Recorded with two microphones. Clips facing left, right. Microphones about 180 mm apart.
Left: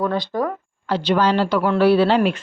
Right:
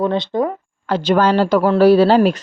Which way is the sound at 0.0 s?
25° right (ahead or behind).